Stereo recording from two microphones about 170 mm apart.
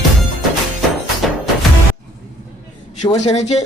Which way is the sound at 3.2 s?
40° left (ahead or behind).